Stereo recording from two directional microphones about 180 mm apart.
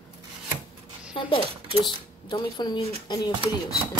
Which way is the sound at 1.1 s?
30° left (ahead or behind).